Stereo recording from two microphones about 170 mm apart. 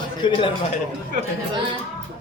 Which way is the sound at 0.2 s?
30° left (ahead or behind).